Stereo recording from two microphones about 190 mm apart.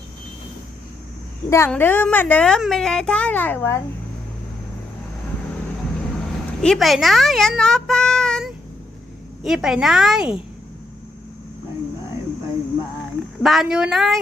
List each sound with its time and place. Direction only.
1.5 s a woman's voice: 15° left (ahead or behind)
6.6 s a child's voice: centre (ahead or behind)
13.4 s a child's voice: centre (ahead or behind)